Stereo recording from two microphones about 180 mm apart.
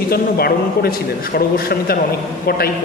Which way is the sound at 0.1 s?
55° left (ahead or behind).